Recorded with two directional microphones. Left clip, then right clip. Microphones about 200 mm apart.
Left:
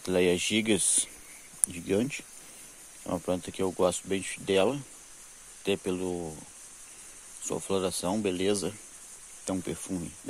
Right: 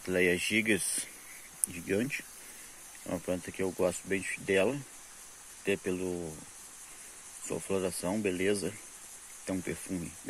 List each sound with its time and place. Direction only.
0.0 s speech: 20° left (ahead or behind)
7.4 s speech: 20° left (ahead or behind)